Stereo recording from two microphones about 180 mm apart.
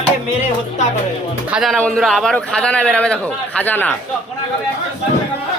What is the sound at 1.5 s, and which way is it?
A man's voice, centre (ahead or behind).